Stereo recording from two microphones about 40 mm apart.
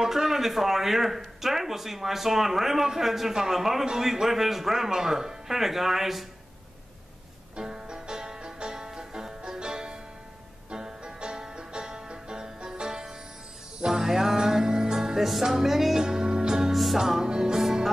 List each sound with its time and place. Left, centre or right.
0.0 s speech: centre
7.5 s music: centre
16.7 s music: centre
17.0 s music: centre